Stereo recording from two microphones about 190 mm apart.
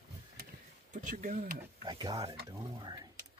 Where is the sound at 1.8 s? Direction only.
20° right (ahead or behind).